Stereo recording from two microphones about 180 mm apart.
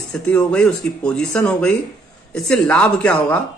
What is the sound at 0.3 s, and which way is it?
Speech, 5° left (ahead or behind).